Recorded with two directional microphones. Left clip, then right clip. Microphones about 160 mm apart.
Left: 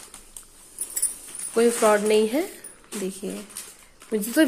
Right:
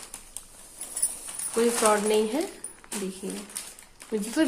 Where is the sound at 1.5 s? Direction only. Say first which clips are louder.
Left 4 dB; 20° left (ahead or behind).